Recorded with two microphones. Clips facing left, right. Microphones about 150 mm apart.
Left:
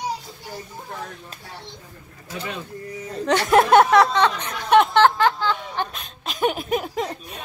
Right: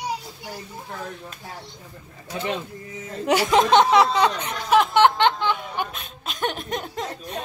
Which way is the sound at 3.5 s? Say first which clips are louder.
Left 3 dB; 5° left (ahead or behind).